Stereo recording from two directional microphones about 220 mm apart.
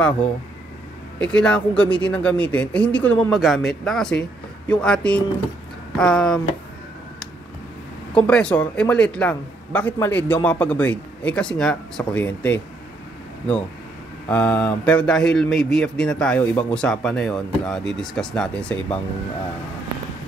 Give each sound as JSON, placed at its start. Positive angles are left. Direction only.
{"t": 1.2, "sound": "speech", "side_deg": 5}
{"t": 8.1, "sound": "speech", "side_deg": 5}
{"t": 14.3, "sound": "speech", "side_deg": 5}